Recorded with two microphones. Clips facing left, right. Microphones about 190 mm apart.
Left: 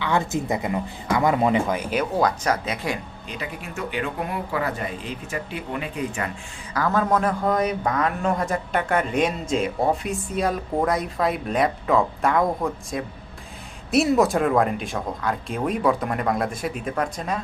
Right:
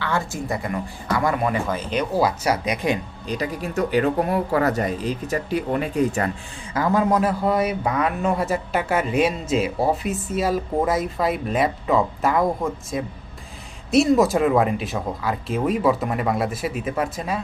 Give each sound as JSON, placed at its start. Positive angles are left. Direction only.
{"t": 0.0, "sound": "speech", "side_deg": 20}
{"t": 2.1, "sound": "speech", "side_deg": -5}
{"t": 3.2, "sound": "speech", "side_deg": -40}
{"t": 6.7, "sound": "a man's voice", "side_deg": -15}